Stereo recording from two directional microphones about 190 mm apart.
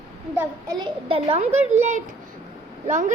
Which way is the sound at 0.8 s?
30° right (ahead or behind).